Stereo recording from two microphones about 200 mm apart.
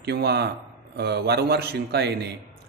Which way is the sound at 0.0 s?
55° right (ahead or behind).